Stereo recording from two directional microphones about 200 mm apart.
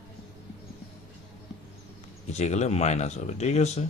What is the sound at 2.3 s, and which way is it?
Speech, 35° left (ahead or behind).